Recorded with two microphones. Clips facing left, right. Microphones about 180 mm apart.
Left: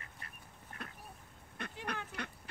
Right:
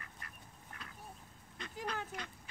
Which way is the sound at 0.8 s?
60° left (ahead or behind).